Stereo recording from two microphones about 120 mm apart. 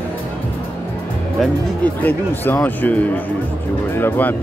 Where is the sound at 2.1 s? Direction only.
15° left (ahead or behind).